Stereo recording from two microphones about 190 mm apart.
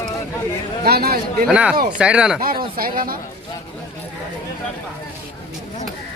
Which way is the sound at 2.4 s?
50° right (ahead or behind).